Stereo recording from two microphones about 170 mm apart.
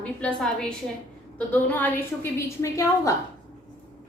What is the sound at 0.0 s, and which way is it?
A woman's voice, 5° left (ahead or behind).